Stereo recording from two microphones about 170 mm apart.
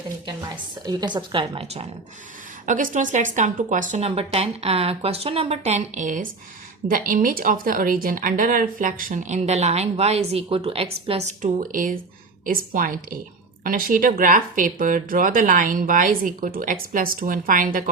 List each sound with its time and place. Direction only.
0.9 s a woman's voice: 25° right (ahead or behind)
2.6 s a woman's voice: 50° right (ahead or behind)